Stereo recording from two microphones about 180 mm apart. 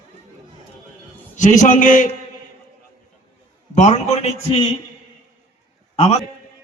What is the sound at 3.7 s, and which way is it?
Speech, 40° left (ahead or behind).